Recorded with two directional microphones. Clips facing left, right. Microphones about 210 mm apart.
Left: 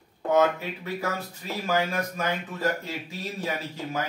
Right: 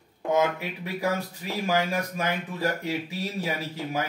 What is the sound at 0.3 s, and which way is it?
Speech, 15° right (ahead or behind).